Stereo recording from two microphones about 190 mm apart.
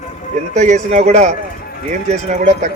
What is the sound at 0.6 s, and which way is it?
A man's voice, 40° right (ahead or behind).